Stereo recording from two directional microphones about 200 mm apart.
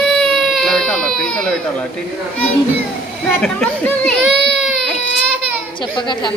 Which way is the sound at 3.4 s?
5° left (ahead or behind).